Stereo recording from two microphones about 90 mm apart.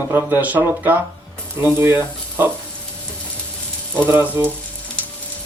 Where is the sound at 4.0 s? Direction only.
30° right (ahead or behind).